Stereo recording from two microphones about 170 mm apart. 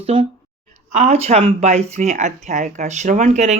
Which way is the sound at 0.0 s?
35° right (ahead or behind).